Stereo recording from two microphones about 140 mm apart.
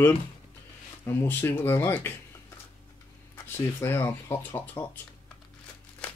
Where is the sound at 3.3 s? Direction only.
15° left (ahead or behind).